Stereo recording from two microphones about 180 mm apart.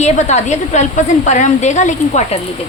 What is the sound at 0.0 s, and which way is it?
A woman's voice, 40° left (ahead or behind).